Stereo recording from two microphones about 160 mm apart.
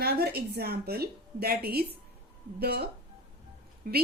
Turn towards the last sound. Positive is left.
turn(degrees=-65)  # may be behind; listen again after turning